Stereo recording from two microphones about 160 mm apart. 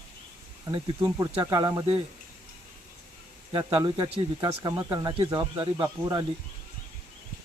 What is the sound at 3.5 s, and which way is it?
Speech, 35° right (ahead or behind).